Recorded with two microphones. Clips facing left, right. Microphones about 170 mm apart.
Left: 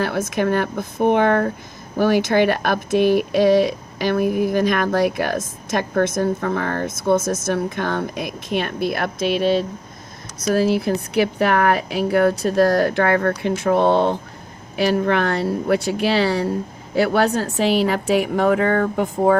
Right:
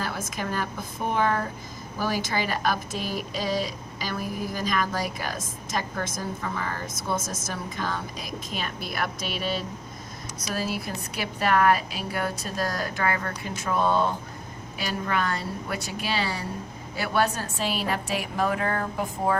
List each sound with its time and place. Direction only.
0.0 s speech: 65° left (ahead or behind)
10.5 s a woman's voice: 60° left (ahead or behind)